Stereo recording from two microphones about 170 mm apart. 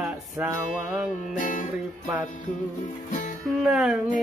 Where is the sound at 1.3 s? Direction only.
50° left (ahead or behind).